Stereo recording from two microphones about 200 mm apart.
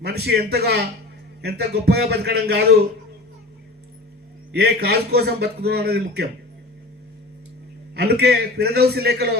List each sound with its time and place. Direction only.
0.0 s a man's voice: 55° right (ahead or behind)
4.5 s a man's voice: 55° right (ahead or behind)
7.9 s a man's voice: 55° right (ahead or behind)